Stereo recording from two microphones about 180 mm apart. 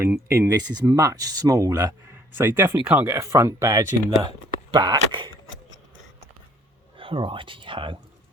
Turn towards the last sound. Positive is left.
turn(degrees=-30)  # may be behind; listen again after turning